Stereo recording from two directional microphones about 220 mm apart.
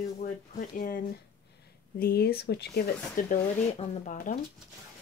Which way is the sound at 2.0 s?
45° left (ahead or behind).